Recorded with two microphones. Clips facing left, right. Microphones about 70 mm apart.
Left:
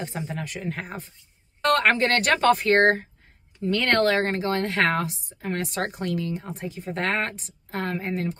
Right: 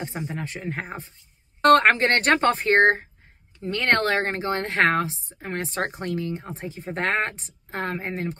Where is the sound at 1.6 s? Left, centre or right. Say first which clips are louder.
Right 5 dB; right.